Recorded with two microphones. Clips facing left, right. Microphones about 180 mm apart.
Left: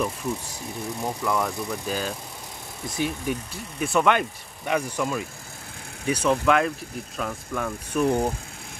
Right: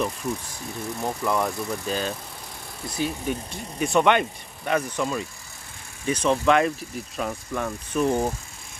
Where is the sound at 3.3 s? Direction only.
10° left (ahead or behind).